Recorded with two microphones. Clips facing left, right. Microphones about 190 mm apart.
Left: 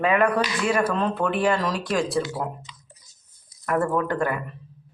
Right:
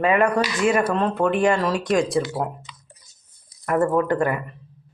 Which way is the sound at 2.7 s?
60° right (ahead or behind).